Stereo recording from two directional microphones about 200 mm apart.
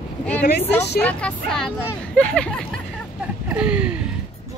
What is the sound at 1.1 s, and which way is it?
Speech, 5° left (ahead or behind).